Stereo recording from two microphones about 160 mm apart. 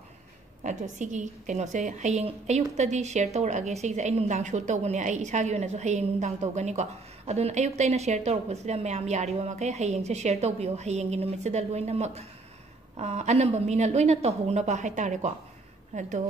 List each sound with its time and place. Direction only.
0.7 s a woman's voice: 50° right (ahead or behind)